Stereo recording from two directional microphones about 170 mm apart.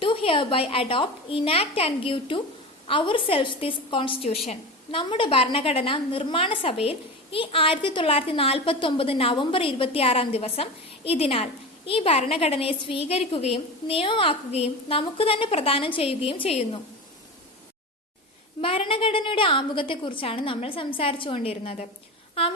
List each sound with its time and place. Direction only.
0.0 s a woman's voice: 30° left (ahead or behind)
18.6 s a woman's voice: 30° left (ahead or behind)